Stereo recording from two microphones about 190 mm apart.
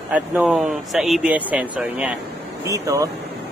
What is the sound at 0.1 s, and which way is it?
Speech, 5° right (ahead or behind).